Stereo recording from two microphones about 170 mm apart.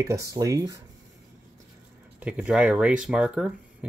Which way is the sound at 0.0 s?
20° right (ahead or behind).